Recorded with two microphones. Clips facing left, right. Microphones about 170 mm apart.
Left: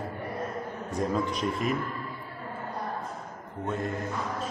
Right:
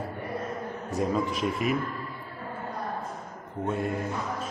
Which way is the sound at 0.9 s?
5° right (ahead or behind).